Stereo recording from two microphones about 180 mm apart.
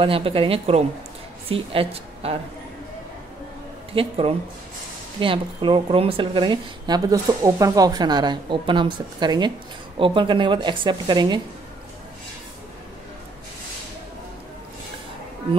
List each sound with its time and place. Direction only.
0.0 s a woman's voice: 30° right (ahead or behind)
3.9 s a woman's voice: 30° right (ahead or behind)